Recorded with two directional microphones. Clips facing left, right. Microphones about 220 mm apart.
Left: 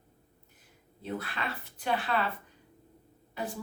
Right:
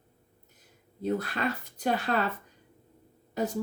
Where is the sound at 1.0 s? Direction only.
40° right (ahead or behind).